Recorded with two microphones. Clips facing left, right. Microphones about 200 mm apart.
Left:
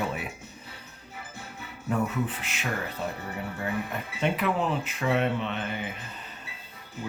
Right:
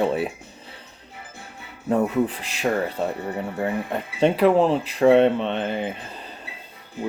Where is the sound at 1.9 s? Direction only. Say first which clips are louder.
Right 7 dB; 35° right (ahead or behind).